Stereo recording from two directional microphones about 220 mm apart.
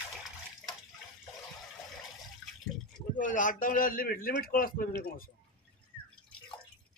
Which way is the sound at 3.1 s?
35° left (ahead or behind).